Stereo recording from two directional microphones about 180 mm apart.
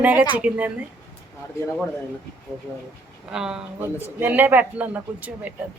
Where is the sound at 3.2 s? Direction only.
5° right (ahead or behind).